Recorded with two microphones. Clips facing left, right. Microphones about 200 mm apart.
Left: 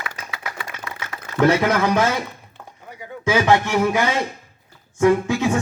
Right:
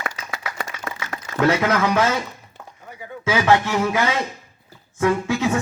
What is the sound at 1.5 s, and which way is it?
Speech, 15° left (ahead or behind).